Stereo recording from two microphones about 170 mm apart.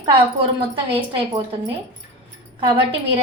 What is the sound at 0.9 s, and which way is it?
Speech, 30° right (ahead or behind).